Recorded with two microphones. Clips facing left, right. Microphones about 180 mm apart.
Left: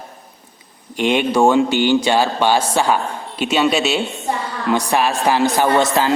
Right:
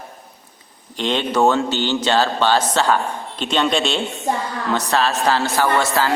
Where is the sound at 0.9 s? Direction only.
10° left (ahead or behind).